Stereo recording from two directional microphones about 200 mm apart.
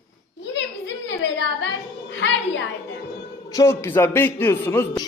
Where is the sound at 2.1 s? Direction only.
65° left (ahead or behind).